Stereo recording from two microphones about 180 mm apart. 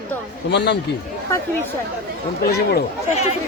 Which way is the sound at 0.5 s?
70° left (ahead or behind).